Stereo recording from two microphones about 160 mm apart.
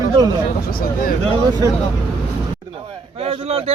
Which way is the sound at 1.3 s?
25° right (ahead or behind).